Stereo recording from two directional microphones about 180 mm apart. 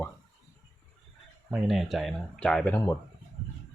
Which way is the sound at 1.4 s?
5° right (ahead or behind).